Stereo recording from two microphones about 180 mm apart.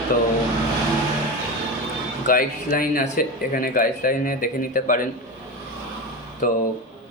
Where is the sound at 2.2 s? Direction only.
50° left (ahead or behind).